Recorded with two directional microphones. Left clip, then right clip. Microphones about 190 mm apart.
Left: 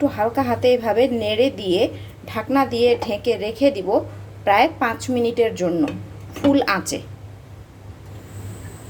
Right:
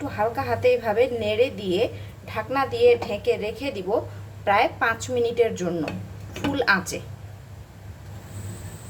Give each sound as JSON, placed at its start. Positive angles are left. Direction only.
{"t": 0.2, "sound": "a woman's voice", "side_deg": 20}